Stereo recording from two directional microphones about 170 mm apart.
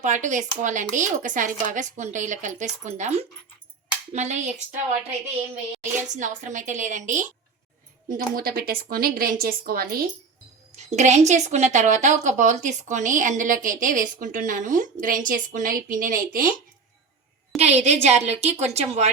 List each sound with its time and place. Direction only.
0.0 s a woman's voice: 45° right (ahead or behind)
6.1 s a woman's voice: 45° right (ahead or behind)
8.1 s a woman's voice: 60° right (ahead or behind)
10.8 s a woman's voice: 45° right (ahead or behind)
17.6 s a woman's voice: 40° right (ahead or behind)